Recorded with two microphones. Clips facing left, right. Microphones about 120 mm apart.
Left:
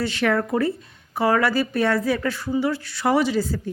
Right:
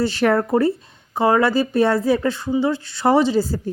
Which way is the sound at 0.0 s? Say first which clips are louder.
Right 4 dB; 35° right (ahead or behind).